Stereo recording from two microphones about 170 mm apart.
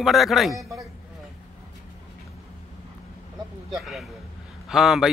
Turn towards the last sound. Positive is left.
turn(degrees=0)  # may be behind; listen again after turning